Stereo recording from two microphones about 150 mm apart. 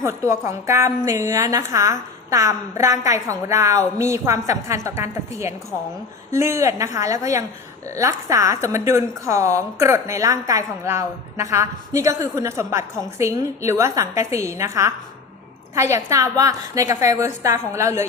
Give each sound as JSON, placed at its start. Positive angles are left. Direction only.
{"t": 0.3, "sound": "speech", "side_deg": -20}